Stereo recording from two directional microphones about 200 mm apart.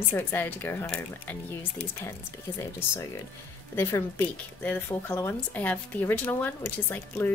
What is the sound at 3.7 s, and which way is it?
Speech, 10° left (ahead or behind).